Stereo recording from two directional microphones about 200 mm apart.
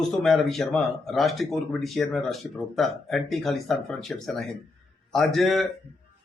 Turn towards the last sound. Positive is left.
turn(degrees=0)  # may be behind; listen again after turning